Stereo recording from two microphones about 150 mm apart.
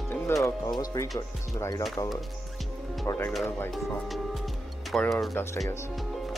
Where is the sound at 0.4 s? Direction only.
20° left (ahead or behind).